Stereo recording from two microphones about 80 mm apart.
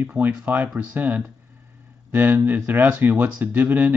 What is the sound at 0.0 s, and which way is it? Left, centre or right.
Speech, right.